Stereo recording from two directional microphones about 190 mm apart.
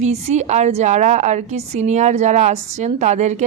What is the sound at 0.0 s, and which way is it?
Speech, 35° right (ahead or behind).